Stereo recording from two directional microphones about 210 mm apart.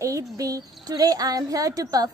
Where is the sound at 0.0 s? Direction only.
15° right (ahead or behind).